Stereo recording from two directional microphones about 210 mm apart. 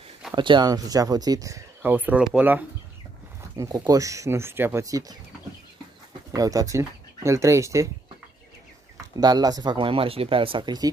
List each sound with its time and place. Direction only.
0.3 s speech: 20° right (ahead or behind)
3.5 s speech: 15° right (ahead or behind)
6.3 s speech: 15° right (ahead or behind)
9.2 s speech: 20° right (ahead or behind)